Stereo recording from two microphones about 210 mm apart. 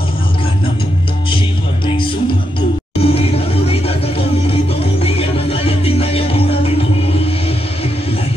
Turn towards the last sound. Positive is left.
turn(degrees=25)  # may be behind; listen again after turning